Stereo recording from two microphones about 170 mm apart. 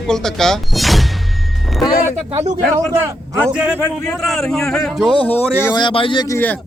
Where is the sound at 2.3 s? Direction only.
40° right (ahead or behind).